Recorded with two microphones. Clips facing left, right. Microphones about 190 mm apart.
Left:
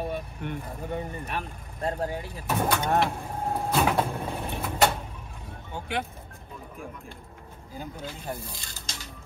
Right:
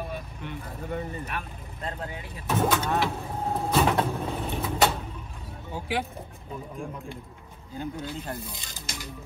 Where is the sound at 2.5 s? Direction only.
Centre (ahead or behind).